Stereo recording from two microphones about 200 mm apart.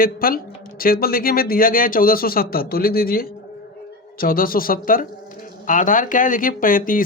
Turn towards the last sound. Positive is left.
turn(degrees=45)  # may be behind; listen again after turning